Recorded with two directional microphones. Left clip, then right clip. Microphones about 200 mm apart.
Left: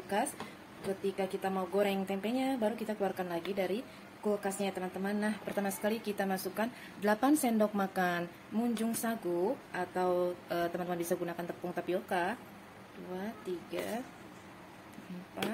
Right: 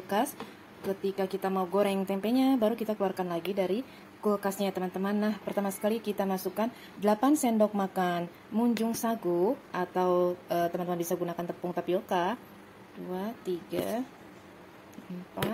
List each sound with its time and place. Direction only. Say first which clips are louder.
1.0 s a woman's voice: right 3 dB; 35° right (ahead or behind)